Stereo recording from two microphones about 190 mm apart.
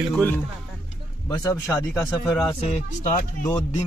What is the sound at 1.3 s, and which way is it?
Speech, 15° left (ahead or behind).